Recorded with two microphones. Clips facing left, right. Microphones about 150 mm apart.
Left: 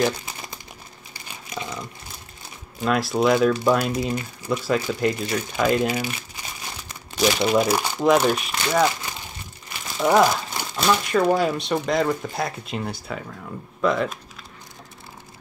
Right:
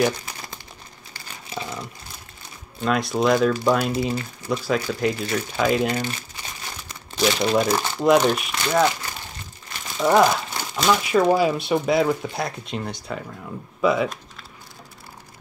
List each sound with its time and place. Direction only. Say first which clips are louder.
1.5 s a sound: right 1 dB; 30° right (ahead or behind)
2.8 s speech: left 1 dB; 5° left (ahead or behind)
7.2 s speech: left 1 dB; 5° left (ahead or behind)
9.9 s speech: right 1 dB; 5° left (ahead or behind)